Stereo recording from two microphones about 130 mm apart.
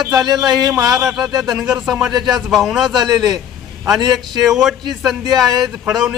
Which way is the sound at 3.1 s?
30° right (ahead or behind).